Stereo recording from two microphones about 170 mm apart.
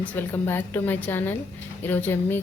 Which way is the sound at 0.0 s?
10° left (ahead or behind).